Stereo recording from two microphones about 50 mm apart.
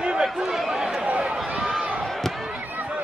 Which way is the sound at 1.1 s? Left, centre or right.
Right.